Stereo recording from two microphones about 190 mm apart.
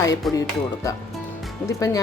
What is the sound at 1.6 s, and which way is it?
Speech, 15° left (ahead or behind).